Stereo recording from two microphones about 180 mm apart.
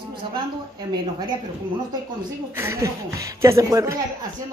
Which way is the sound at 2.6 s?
15° right (ahead or behind).